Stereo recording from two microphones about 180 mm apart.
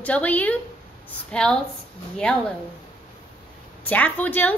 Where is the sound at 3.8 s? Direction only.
10° left (ahead or behind).